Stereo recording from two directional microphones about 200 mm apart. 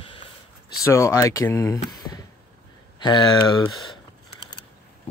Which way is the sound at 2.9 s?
20° left (ahead or behind).